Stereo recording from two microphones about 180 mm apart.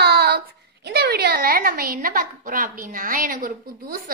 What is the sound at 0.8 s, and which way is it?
A woman's voice, 60° right (ahead or behind).